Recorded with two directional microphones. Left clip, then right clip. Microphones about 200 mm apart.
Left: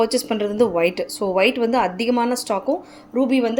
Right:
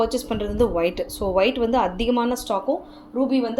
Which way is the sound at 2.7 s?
30° left (ahead or behind).